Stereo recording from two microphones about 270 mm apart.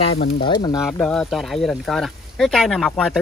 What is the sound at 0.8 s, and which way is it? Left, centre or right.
Speech, centre.